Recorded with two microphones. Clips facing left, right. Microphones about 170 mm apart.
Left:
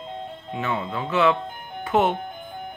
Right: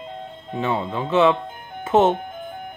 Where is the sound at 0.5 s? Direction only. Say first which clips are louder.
Right 4 dB; 25° right (ahead or behind).